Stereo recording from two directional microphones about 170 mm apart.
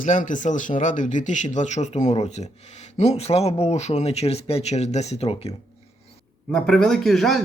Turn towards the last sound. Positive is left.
turn(degrees=0)  # may be behind; listen again after turning